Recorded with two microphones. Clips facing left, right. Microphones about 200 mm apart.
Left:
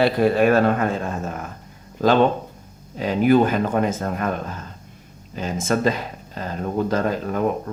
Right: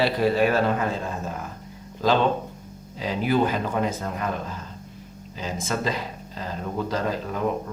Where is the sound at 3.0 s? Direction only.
50° left (ahead or behind).